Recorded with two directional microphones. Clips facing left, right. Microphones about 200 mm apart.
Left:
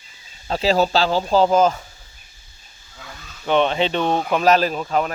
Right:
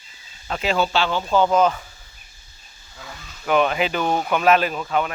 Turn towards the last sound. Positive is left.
turn(degrees=35)  # may be behind; listen again after turning